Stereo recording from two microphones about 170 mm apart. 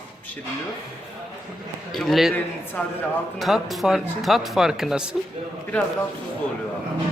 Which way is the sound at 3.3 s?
Centre (ahead or behind).